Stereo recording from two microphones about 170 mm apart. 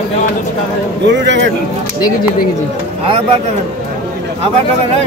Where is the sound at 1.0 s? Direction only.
90° right.